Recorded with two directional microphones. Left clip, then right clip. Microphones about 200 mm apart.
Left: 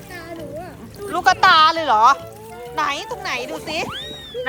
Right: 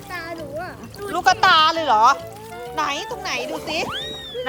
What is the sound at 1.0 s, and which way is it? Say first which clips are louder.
Speech: left 2 dB; 15° right (ahead or behind).